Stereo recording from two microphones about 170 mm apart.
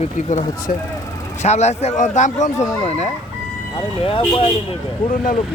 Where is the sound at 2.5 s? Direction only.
15° left (ahead or behind).